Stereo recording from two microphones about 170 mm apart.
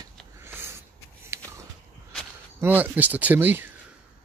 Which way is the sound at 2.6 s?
10° right (ahead or behind).